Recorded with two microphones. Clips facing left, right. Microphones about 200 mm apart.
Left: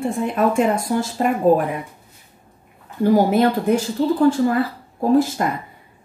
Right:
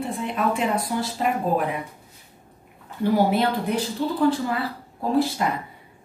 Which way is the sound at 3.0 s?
45° left (ahead or behind).